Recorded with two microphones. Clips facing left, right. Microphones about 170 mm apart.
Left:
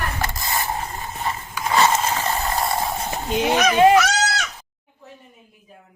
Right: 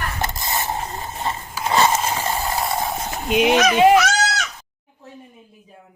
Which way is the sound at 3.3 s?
15° right (ahead or behind).